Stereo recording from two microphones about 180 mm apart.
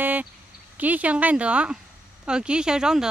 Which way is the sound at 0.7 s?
10° right (ahead or behind).